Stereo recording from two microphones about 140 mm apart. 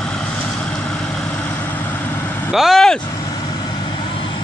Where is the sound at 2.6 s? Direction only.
Centre (ahead or behind).